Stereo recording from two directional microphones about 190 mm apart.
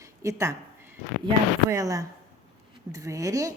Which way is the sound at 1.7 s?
20° right (ahead or behind).